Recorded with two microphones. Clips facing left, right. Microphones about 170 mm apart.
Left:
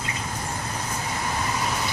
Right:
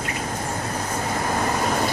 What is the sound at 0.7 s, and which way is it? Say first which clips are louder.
Vehicle: right 5 dB; 45° right (ahead or behind).